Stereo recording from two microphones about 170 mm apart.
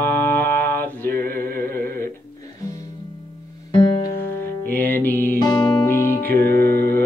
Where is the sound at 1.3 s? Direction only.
60° right (ahead or behind).